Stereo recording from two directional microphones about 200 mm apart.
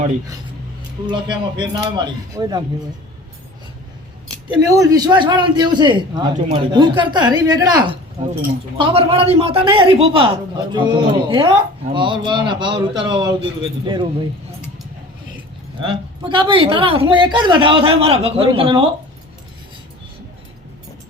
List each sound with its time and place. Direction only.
1.0 s a man's voice: 25° right (ahead or behind)
4.4 s a man's voice: 15° right (ahead or behind)
15.8 s a man's voice: 25° right (ahead or behind)